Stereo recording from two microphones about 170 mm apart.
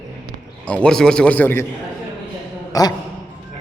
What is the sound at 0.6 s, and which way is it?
A man's voice, 5° left (ahead or behind).